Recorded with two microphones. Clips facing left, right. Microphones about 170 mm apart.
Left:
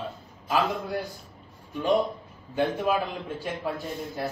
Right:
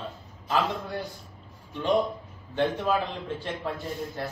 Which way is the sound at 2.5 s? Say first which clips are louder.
Even; 10° left (ahead or behind).